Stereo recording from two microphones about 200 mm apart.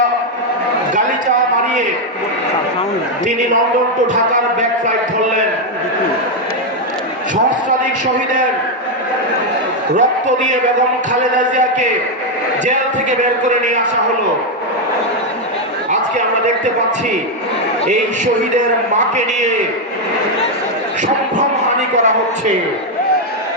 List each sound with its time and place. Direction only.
9.9 s a man's voice: 40° right (ahead or behind)
12.6 s a man's voice: 40° right (ahead or behind)
18.5 s a man's voice: 35° right (ahead or behind)
21.9 s a man's voice: 35° right (ahead or behind)